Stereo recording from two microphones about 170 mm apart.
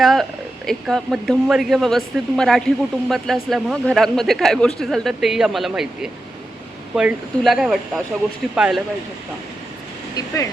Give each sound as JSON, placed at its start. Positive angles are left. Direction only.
{"t": 0.0, "sound": "speech", "side_deg": 0}
{"t": 10.2, "sound": "speech", "side_deg": 20}